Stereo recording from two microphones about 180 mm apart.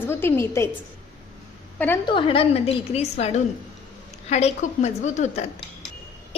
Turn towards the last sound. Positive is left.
turn(degrees=40)  # may be behind; listen again after turning